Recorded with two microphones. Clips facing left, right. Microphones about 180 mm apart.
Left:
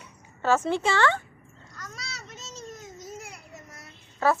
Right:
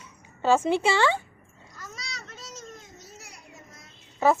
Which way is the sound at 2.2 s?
20° left (ahead or behind).